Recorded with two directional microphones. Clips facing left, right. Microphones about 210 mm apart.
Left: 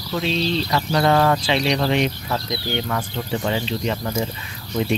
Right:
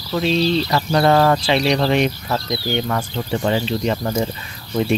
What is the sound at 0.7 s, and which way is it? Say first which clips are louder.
Speech: right 3 dB; 35° right (ahead or behind).